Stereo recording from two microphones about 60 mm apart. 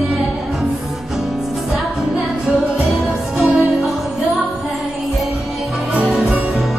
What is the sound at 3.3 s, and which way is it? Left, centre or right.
Music, centre.